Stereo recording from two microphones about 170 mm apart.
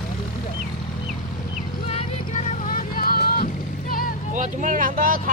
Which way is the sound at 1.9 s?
40° left (ahead or behind).